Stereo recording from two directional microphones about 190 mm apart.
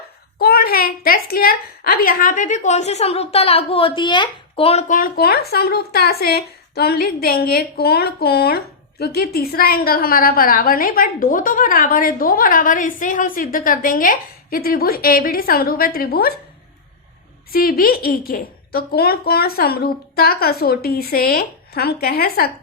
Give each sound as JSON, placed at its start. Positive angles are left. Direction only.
{"t": 0.3, "sound": "a woman's voice", "side_deg": 50}
{"t": 17.5, "sound": "a woman's voice", "side_deg": 50}